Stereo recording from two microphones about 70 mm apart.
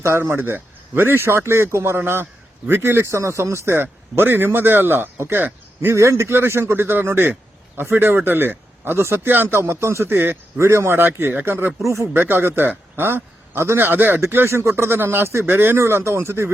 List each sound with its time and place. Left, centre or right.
0.0 s a man's voice: right
5.9 s a man's voice: right